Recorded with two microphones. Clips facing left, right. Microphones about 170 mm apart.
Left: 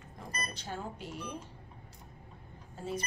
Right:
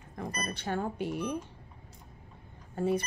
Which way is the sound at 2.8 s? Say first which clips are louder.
Right 9 dB; 60° right (ahead or behind).